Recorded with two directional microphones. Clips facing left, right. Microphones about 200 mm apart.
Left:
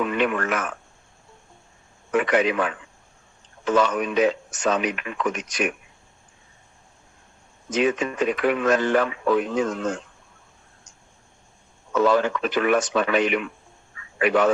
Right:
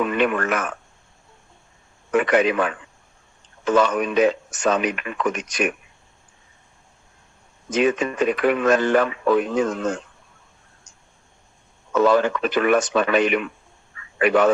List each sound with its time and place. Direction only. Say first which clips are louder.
0.0 s speech: right 2 dB; 55° right (ahead or behind)
2.1 s speech: right 2 dB; 55° right (ahead or behind)
7.7 s speech: right 2 dB; 55° right (ahead or behind)
11.9 s speech: right 2 dB; 55° right (ahead or behind)